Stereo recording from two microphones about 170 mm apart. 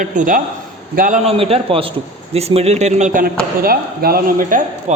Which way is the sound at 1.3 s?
35° right (ahead or behind).